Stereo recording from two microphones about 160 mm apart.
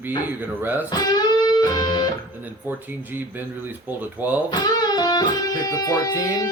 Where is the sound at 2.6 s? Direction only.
10° right (ahead or behind).